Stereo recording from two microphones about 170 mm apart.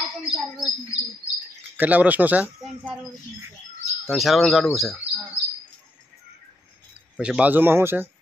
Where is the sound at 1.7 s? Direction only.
10° right (ahead or behind).